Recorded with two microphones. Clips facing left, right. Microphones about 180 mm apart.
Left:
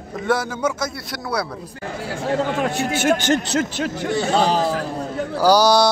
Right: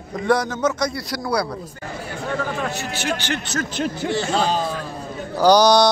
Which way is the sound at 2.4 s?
75° left (ahead or behind).